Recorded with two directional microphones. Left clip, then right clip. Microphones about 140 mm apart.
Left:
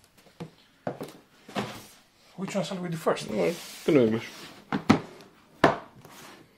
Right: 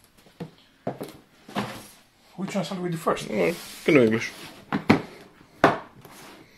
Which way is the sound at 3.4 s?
5° right (ahead or behind).